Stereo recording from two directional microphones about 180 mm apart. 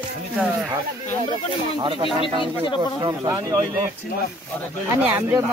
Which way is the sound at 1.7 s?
25° right (ahead or behind).